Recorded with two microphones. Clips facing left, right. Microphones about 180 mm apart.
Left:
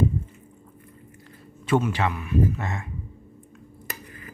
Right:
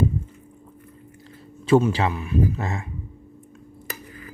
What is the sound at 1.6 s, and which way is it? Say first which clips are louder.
Speech: right 5 dB; 30° right (ahead or behind).